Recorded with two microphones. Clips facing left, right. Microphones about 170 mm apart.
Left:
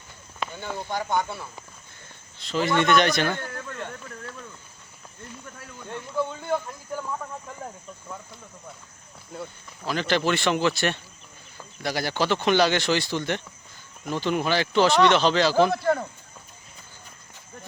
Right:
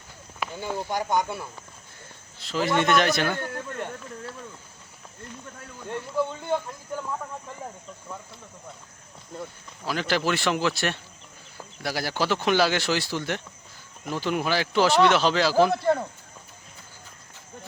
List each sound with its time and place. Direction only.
0.3 s speech: 10° right (ahead or behind)
2.4 s speech: 5° right (ahead or behind)
5.8 s speech: centre (ahead or behind)
9.3 s speech: centre (ahead or behind)